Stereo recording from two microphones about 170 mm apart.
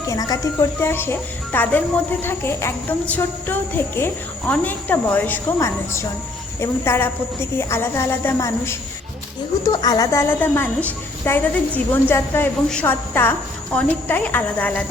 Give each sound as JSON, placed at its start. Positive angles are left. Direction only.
{"t": 0.1, "sound": "jingle bell", "side_deg": 20}